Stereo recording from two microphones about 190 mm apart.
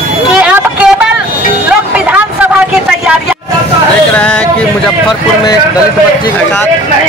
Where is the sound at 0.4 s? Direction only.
10° right (ahead or behind).